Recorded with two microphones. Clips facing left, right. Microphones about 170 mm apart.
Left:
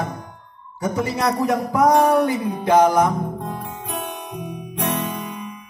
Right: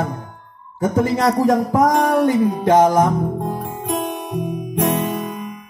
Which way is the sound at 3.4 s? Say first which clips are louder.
Right 5 dB; 50° right (ahead or behind).